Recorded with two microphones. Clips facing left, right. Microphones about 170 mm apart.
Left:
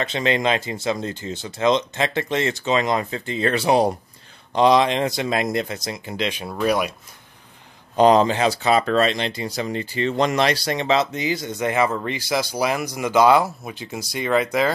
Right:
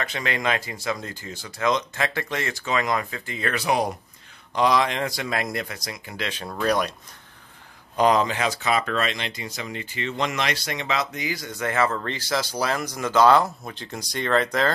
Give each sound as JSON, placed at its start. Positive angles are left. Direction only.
{"t": 0.0, "sound": "speech", "side_deg": 25}
{"t": 7.9, "sound": "speech", "side_deg": 30}